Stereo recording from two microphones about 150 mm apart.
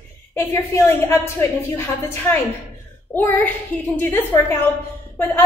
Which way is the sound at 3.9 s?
15° left (ahead or behind).